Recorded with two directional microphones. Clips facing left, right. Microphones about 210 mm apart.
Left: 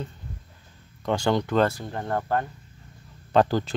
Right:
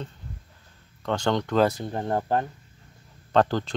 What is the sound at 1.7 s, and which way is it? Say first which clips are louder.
Speech: right 2 dB; 20° right (ahead or behind).